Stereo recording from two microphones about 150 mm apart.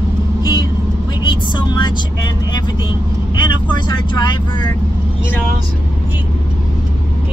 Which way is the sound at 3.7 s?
30° left (ahead or behind).